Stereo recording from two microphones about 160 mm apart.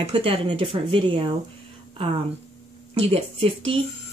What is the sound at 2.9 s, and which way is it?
Speech, 35° right (ahead or behind).